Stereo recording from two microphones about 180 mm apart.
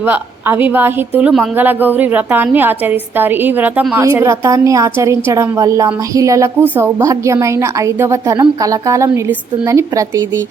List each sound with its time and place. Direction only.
0.0 s a woman's voice: 10° right (ahead or behind)